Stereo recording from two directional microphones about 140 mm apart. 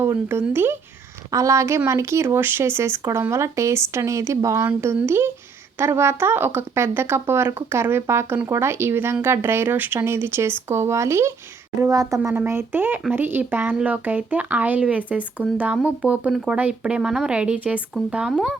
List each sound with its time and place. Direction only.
0.0 s speech: 20° right (ahead or behind)